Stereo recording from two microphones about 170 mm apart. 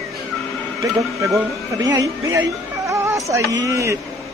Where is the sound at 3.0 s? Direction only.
15° right (ahead or behind).